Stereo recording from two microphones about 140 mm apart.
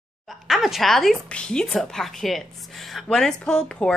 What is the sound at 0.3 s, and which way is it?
Speech, centre (ahead or behind).